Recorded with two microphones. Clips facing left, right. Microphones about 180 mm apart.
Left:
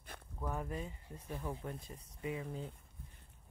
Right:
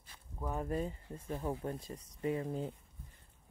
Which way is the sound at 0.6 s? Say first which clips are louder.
Right 6 dB; 40° right (ahead or behind).